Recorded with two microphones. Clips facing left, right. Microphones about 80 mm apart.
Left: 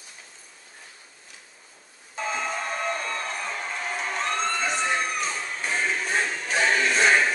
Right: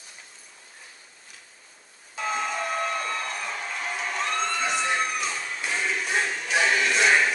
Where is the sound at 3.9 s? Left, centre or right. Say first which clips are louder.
Left 1 dB; left.